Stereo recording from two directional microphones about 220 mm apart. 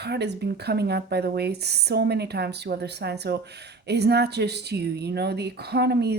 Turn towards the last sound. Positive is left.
turn(degrees=-50)  # may be behind; listen again after turning